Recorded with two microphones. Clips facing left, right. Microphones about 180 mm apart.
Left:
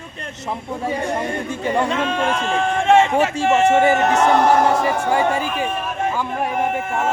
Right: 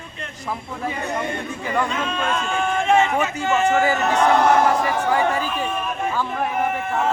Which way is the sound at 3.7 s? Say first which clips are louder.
Left 4 dB; 25° left (ahead or behind).